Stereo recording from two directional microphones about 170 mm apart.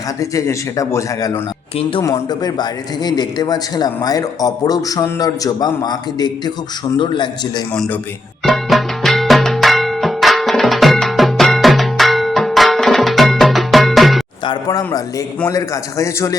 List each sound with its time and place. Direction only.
0.2 s a man's voice: 20° left (ahead or behind)
7.7 s a man's voice: 10° left (ahead or behind)
8.4 s music: centre (ahead or behind)
14.4 s a man's voice: 25° left (ahead or behind)